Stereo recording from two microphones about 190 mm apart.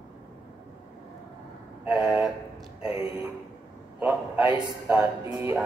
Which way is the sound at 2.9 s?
25° left (ahead or behind).